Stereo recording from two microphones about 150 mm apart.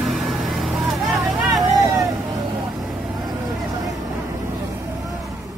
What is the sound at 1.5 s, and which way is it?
Vehicle, 25° right (ahead or behind).